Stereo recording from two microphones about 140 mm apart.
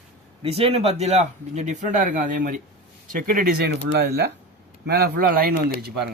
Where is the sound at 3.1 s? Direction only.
90° right.